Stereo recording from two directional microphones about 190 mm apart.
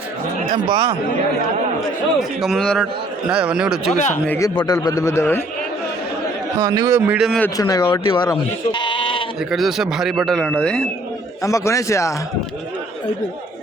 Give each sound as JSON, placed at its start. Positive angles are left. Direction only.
{"t": 0.5, "sound": "speech", "side_deg": -25}
{"t": 2.4, "sound": "a man's voice", "side_deg": 0}
{"t": 3.9, "sound": "speech", "side_deg": 40}
{"t": 4.3, "sound": "speech", "side_deg": 15}
{"t": 6.6, "sound": "speech", "side_deg": -20}
{"t": 7.1, "sound": "a man's voice", "side_deg": 0}
{"t": 7.4, "sound": "speech", "side_deg": 20}
{"t": 9.5, "sound": "a man's voice", "side_deg": 0}
{"t": 11.4, "sound": "a man's voice", "side_deg": 15}